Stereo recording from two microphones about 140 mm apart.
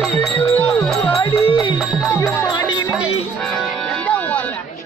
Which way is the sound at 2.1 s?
20° left (ahead or behind).